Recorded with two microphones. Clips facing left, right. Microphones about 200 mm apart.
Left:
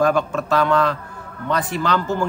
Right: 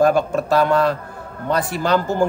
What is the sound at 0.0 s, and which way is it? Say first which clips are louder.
Speech: right 3 dB; 40° right (ahead or behind).